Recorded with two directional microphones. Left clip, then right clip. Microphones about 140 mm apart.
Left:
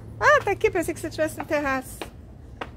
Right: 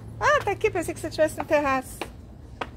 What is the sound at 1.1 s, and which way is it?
Speech, 20° left (ahead or behind).